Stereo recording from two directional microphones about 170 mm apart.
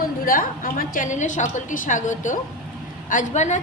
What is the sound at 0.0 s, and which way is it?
A woman's voice, 55° left (ahead or behind).